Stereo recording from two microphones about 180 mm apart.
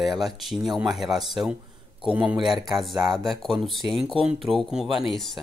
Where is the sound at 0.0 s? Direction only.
Centre (ahead or behind).